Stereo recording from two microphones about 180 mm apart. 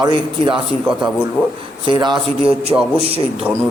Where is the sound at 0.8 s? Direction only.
5° right (ahead or behind).